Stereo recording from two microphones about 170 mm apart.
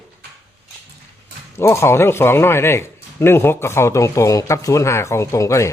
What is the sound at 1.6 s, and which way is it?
Speech, 15° left (ahead or behind).